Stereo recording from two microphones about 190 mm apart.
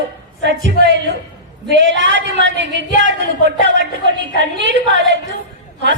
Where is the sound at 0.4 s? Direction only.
70° right (ahead or behind).